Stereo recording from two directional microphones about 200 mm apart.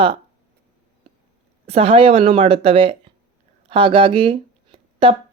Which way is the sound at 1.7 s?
30° right (ahead or behind).